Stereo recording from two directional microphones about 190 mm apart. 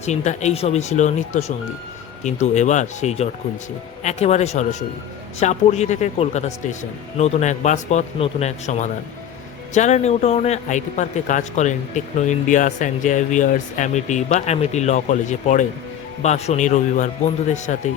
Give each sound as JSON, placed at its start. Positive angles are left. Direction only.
{"t": 0.0, "sound": "a man's voice", "side_deg": 35}